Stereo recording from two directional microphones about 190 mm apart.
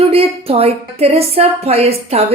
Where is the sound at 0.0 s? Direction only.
30° right (ahead or behind).